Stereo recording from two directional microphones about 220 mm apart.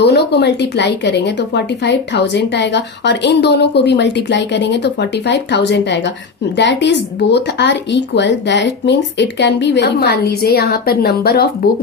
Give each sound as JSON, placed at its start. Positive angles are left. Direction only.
{"t": 0.0, "sound": "a woman's voice", "side_deg": 50}